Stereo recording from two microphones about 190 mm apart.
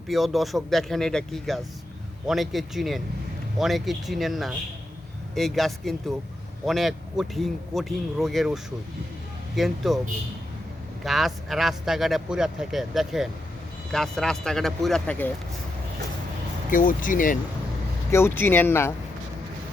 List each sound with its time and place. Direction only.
0.1 s speech: centre (ahead or behind)
11.0 s speech: centre (ahead or behind)
16.6 s speech: 45° left (ahead or behind)
18.1 s speech: 10° left (ahead or behind)